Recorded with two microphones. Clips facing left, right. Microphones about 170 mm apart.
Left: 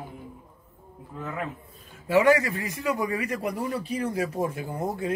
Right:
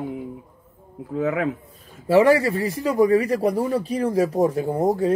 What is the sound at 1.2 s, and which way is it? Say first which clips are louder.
Speech: right 11 dB; 80° right.